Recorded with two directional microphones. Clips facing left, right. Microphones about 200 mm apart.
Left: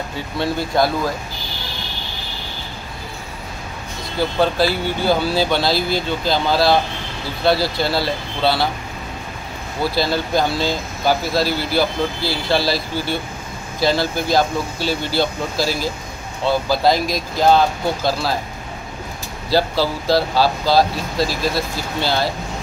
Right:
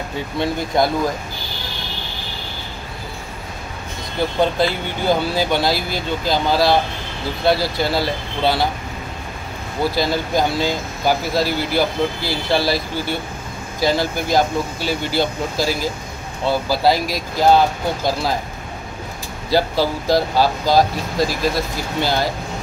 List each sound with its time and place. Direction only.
0.4 s speech: 20° right (ahead or behind)
4.4 s speech: 20° right (ahead or behind)
9.9 s speech: 15° right (ahead or behind)
19.5 s speech: 15° right (ahead or behind)